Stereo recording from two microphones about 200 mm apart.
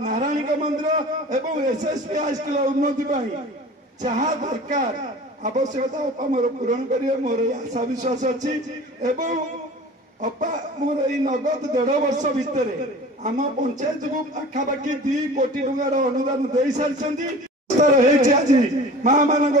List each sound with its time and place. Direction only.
0.0 s a man's voice: 40° right (ahead or behind)
11.1 s a man's voice: 40° right (ahead or behind)